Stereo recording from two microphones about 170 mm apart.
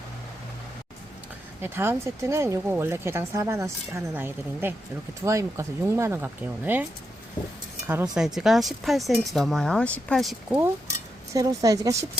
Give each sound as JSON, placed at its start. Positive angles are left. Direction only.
{"t": 1.6, "sound": "speech", "side_deg": -15}
{"t": 8.1, "sound": "speech", "side_deg": -5}
{"t": 10.5, "sound": "a woman's voice", "side_deg": -15}